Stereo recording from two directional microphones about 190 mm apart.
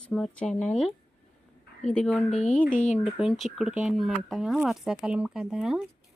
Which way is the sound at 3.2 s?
Centre (ahead or behind).